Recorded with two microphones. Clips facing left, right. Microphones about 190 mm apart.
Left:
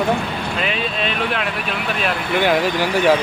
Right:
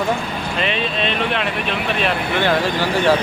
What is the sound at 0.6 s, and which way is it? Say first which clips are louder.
Speech: right 2 dB; 5° left (ahead or behind).